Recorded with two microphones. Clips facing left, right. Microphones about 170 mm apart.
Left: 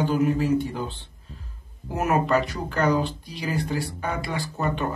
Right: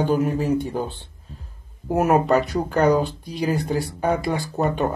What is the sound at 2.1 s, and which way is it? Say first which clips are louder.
Speech: right 3 dB; 45° right (ahead or behind).